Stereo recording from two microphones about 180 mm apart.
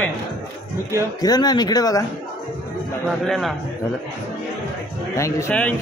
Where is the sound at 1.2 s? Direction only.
20° left (ahead or behind).